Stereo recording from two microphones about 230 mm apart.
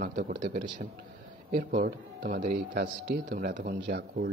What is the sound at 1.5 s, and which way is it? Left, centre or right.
A man's voice, right.